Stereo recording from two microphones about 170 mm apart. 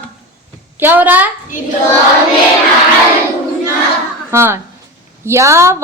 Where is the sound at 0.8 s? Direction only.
10° right (ahead or behind).